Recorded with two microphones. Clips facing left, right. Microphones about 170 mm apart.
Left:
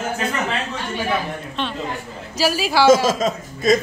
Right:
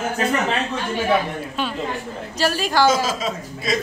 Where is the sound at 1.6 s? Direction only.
5° right (ahead or behind).